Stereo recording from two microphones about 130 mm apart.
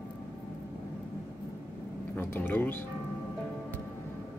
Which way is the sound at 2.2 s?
15° left (ahead or behind).